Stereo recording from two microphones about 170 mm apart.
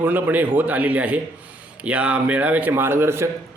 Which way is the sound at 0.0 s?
10° right (ahead or behind).